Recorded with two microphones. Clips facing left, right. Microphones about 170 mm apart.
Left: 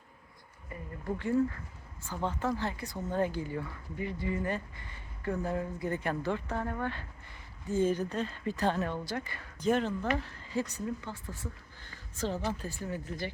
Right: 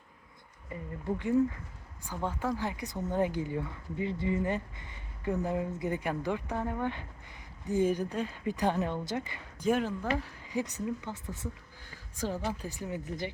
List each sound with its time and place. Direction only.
0.7 s speech: 20° right (ahead or behind)